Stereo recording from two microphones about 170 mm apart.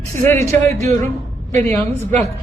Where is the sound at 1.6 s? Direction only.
15° left (ahead or behind).